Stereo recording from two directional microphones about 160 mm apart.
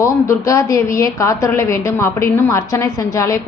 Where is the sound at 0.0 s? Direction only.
20° left (ahead or behind).